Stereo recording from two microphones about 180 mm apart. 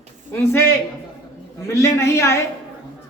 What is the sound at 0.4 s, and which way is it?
Speech, 15° left (ahead or behind).